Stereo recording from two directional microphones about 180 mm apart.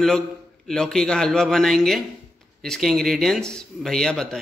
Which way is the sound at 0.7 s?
5° left (ahead or behind).